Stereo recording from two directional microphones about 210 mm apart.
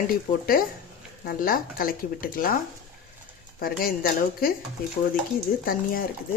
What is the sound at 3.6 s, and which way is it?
Speech, 45° left (ahead or behind).